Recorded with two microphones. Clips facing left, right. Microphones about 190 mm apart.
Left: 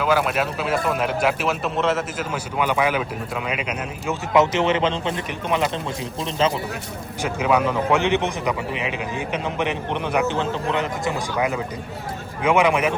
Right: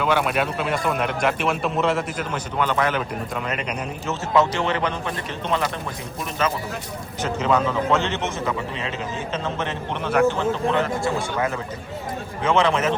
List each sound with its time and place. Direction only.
0.0 s a man's voice: centre (ahead or behind)
4.4 s a man's voice: 20° left (ahead or behind)
7.2 s a man's voice: 10° left (ahead or behind)